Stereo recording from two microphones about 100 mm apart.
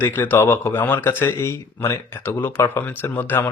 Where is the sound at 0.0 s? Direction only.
20° left (ahead or behind).